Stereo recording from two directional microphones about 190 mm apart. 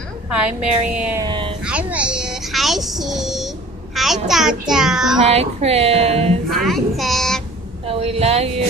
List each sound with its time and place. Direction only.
0.8 s music: 5° right (ahead or behind)
1.2 s a sound: 25° right (ahead or behind)
1.6 s a sound: 5° right (ahead or behind)
3.9 s a child's voice: centre (ahead or behind)
5.2 s a woman's voice: 35° right (ahead or behind)
6.5 s a child's voice: centre (ahead or behind)
7.8 s speech: 30° right (ahead or behind)